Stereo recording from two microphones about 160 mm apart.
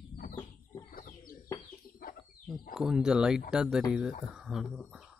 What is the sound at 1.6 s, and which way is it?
Chicken, 60° left (ahead or behind).